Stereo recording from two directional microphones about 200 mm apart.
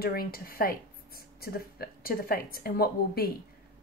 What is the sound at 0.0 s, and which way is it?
Speech, 50° left (ahead or behind).